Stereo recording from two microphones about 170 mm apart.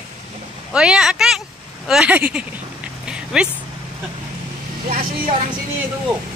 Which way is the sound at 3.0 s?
5° right (ahead or behind).